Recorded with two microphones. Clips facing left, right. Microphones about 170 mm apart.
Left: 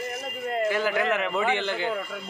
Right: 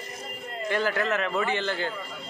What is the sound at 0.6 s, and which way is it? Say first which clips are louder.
A man's voice: left 2 dB; 10° left (ahead or behind).